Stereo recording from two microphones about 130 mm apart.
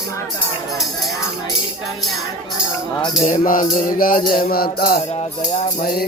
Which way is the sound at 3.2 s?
90° left.